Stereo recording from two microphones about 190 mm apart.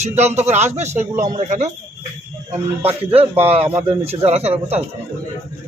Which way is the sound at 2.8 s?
30° right (ahead or behind).